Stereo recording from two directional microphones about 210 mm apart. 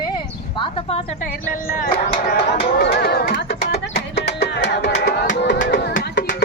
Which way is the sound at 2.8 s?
50° left (ahead or behind).